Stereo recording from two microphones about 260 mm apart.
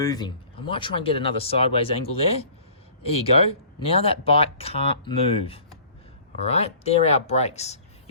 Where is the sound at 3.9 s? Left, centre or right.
Left.